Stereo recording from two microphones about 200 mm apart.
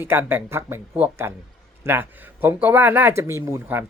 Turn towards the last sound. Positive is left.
turn(degrees=-10)  # may be behind; listen again after turning